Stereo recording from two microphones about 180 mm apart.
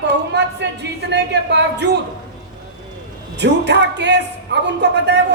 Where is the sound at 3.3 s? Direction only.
70° right (ahead or behind).